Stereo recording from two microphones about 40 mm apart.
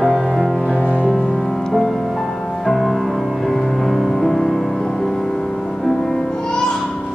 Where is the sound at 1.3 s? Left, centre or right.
Centre.